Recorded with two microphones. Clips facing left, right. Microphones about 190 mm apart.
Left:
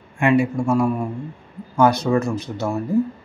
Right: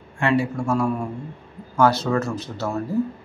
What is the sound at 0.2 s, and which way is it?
Speech, 15° left (ahead or behind).